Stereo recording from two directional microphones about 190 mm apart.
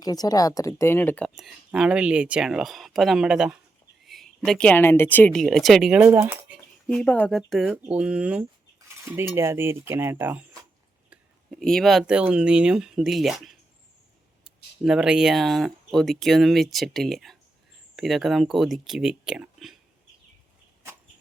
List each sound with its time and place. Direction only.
0.0 s speech: 20° left (ahead or behind); by 6.6 s 15° right (ahead or behind)
6.8 s speech: 5° left (ahead or behind); by 10.4 s 10° right (ahead or behind)
11.6 s speech: centre (ahead or behind)